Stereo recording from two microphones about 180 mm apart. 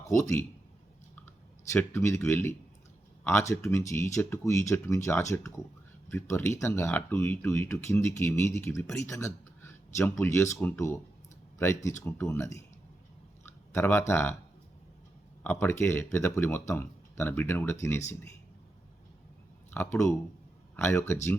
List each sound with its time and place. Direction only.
0.0 s a man's voice: 15° left (ahead or behind)
1.7 s speech: 15° left (ahead or behind)
13.4 s a sound: 15° left (ahead or behind)
14.1 s speech: 15° left (ahead or behind)
15.4 s speech: 15° left (ahead or behind)
19.7 s speech: 15° left (ahead or behind)